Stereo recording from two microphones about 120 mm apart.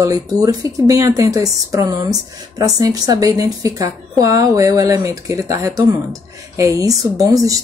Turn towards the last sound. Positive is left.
turn(degrees=-30)  # may be behind; listen again after turning